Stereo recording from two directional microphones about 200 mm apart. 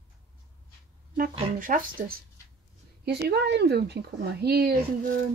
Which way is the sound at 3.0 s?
55° right (ahead or behind).